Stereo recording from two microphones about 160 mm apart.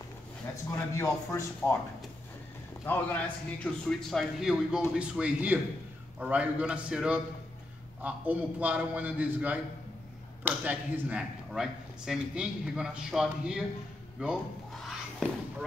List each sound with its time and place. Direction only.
0.9 s speech: 15° left (ahead or behind)
2.9 s a man's voice: 10° left (ahead or behind)
14.2 s a sound: centre (ahead or behind)